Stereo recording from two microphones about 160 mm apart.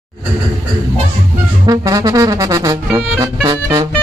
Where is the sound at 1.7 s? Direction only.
25° right (ahead or behind).